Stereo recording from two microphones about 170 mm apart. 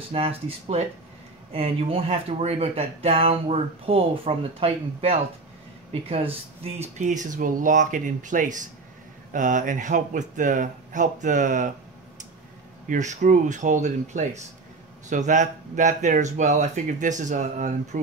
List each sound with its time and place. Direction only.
0.1 s speech: 35° right (ahead or behind)
12.8 s speech: 45° right (ahead or behind)